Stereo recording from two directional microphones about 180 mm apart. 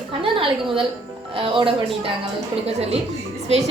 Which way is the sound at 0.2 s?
30° right (ahead or behind).